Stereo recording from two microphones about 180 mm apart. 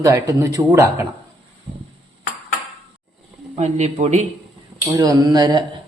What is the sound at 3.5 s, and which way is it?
Speech, 40° right (ahead or behind).